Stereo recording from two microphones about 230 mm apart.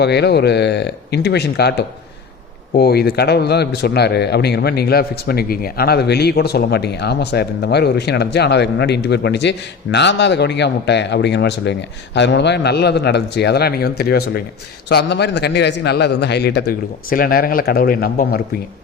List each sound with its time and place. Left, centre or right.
0.0 s speech: left
2.7 s speech: left